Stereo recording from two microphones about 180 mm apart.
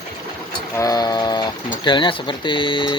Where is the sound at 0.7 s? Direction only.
20° left (ahead or behind).